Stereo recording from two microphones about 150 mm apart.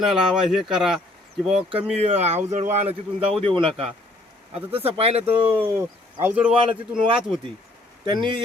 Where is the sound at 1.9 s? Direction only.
45° right (ahead or behind).